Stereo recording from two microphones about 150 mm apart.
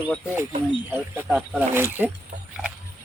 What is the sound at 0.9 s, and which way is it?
Speech, 15° right (ahead or behind).